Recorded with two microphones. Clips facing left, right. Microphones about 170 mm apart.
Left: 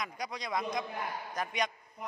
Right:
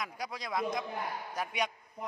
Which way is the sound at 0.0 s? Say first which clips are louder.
Left 1 dB; 5° right (ahead or behind).